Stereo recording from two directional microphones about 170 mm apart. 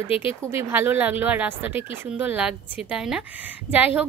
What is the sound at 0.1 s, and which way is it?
Speech, 30° left (ahead or behind).